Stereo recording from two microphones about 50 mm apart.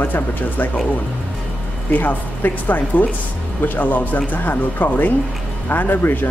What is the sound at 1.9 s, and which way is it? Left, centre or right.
Speech, left.